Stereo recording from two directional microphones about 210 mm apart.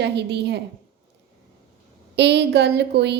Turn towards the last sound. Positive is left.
turn(degrees=-55)  # may be behind; listen again after turning